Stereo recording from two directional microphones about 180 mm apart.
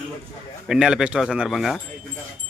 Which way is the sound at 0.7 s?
5° right (ahead or behind).